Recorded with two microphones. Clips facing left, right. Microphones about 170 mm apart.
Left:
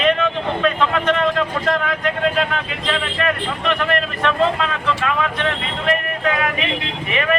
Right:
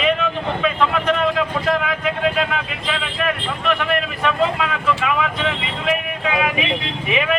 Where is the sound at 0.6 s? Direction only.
Centre (ahead or behind).